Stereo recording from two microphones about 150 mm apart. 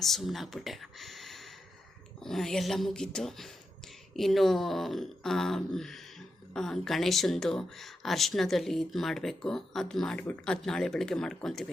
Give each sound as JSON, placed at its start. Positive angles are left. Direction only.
{"t": 0.0, "sound": "speech", "side_deg": 0}